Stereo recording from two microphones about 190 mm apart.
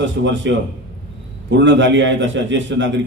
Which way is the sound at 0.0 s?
75° right (ahead or behind).